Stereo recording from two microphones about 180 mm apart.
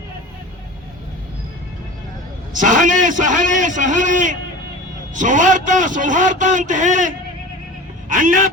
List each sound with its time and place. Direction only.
2.6 s a man's voice: 45° right (ahead or behind)
8.1 s a man's voice: 45° right (ahead or behind)